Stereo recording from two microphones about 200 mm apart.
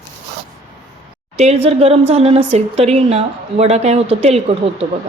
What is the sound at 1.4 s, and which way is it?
Speech, 35° right (ahead or behind).